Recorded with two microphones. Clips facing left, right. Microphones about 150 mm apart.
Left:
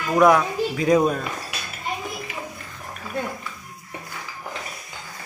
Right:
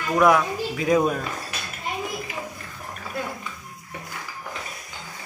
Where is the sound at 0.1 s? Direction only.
Centre (ahead or behind).